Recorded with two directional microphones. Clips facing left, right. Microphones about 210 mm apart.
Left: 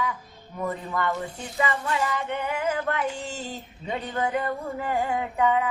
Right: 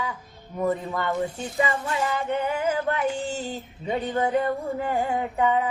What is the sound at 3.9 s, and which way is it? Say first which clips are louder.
Child singing: right 3 dB; 25° right (ahead or behind).